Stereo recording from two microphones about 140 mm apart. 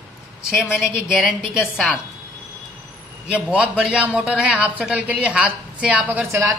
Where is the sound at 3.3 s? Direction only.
10° right (ahead or behind).